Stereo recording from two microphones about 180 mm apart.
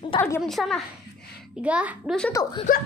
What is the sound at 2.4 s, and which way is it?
Speech, 20° left (ahead or behind).